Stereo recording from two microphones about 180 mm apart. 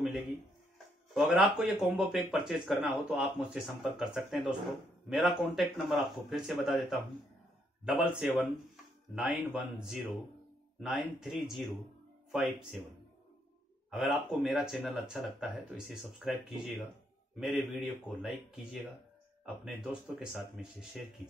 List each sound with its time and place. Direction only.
0.0 s speech: centre (ahead or behind)
13.8 s speech: centre (ahead or behind)